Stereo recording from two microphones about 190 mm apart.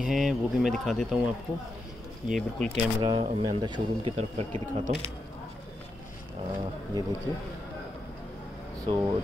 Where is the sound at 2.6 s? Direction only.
30° right (ahead or behind).